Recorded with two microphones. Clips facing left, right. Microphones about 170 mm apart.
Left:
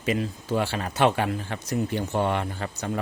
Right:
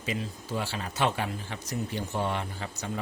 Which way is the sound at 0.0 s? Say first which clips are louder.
Left 7 dB; 65° left (ahead or behind).